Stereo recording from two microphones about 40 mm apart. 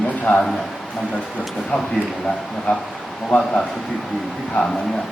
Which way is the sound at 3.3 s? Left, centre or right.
Left.